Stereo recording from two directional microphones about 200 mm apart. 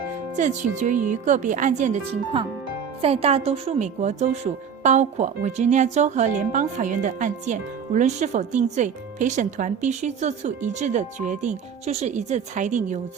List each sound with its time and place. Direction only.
0.3 s a woman's voice: 35° right (ahead or behind)
3.0 s a woman's voice: 30° right (ahead or behind)